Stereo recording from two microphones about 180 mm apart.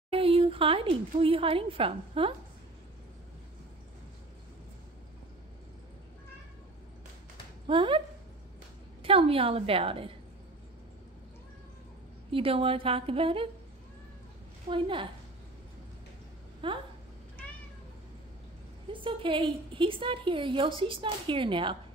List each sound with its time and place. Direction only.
0.1 s a woman's voice: 30° right (ahead or behind)
7.6 s a woman's voice: 30° right (ahead or behind)
9.0 s a woman's voice: 30° right (ahead or behind)
12.3 s a woman's voice: 30° right (ahead or behind)
14.7 s a woman's voice: 30° right (ahead or behind)
16.6 s a woman's voice: 30° right (ahead or behind)
18.9 s a woman's voice: 30° right (ahead or behind)